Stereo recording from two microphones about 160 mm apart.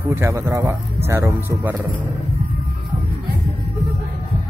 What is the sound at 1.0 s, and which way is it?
Speech, 15° right (ahead or behind).